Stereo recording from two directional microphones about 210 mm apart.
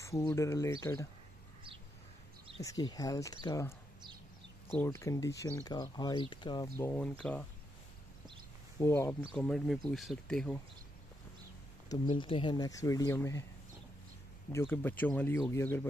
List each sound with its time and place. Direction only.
0.0 s speech: 15° left (ahead or behind)
2.6 s speech: 15° left (ahead or behind)
4.7 s speech: 15° left (ahead or behind)
6.8 s speech: 10° left (ahead or behind)
8.7 s speech: 15° left (ahead or behind)
11.9 s speech: 25° left (ahead or behind)
14.5 s speech: 10° left (ahead or behind)